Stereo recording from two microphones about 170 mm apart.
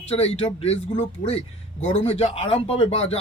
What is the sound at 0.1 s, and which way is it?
Speech, 35° left (ahead or behind).